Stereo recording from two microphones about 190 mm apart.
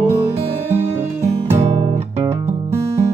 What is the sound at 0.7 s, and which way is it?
Music, 10° right (ahead or behind).